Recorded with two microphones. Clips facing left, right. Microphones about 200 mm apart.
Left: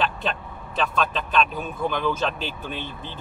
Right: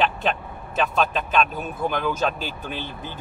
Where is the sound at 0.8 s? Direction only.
5° right (ahead or behind).